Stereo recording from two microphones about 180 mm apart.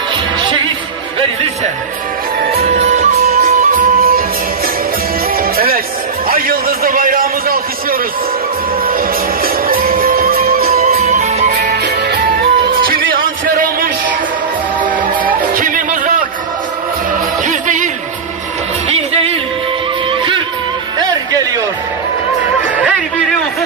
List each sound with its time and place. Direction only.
2.7 s music: 40° right (ahead or behind)
5.3 s music: 55° right (ahead or behind)
6.2 s a man's voice: 55° right (ahead or behind)
8.8 s music: 55° right (ahead or behind)
10.9 s music: 40° right (ahead or behind)
11.7 s music: 60° right (ahead or behind)
15.4 s a sound: 50° right (ahead or behind)
17.1 s music: 45° right (ahead or behind)
20.1 s music: 30° right (ahead or behind)
22.8 s a sound: 5° right (ahead or behind)